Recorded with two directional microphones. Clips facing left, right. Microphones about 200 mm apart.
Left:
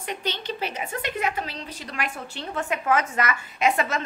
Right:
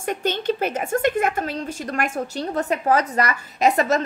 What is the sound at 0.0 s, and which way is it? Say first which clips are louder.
A woman's voice: right 8 dB; 50° right (ahead or behind).